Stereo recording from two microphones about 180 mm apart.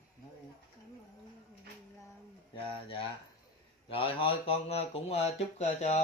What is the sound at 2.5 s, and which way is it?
Speech, 30° left (ahead or behind).